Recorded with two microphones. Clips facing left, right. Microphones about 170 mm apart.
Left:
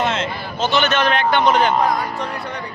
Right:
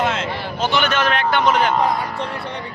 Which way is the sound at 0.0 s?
10° right (ahead or behind).